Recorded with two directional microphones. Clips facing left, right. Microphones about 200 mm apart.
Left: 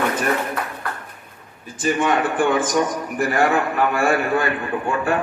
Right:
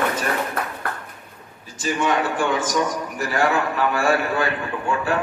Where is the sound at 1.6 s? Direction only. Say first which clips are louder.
Left 3 dB; 55° left (ahead or behind).